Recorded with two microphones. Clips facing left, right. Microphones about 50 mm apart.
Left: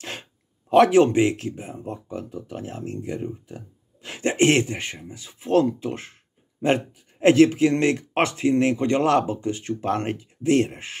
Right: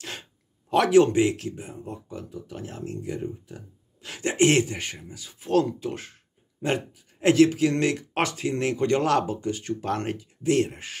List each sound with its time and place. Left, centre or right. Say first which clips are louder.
0.0 s speech: left 3 dB; left